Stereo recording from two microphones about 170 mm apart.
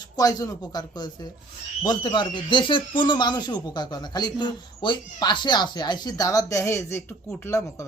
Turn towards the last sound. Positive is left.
turn(degrees=15)  # may be behind; listen again after turning